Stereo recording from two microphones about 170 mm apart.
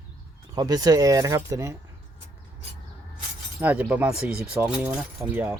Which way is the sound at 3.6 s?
10° right (ahead or behind).